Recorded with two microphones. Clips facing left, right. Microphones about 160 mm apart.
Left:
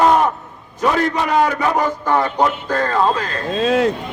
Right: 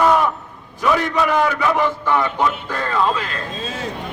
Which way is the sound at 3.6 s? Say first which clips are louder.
Left 15 dB; 65° left (ahead or behind).